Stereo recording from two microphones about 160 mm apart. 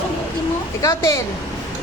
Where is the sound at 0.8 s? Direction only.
20° left (ahead or behind).